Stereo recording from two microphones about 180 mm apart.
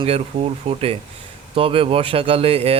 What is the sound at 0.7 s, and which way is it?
Speech, 35° right (ahead or behind).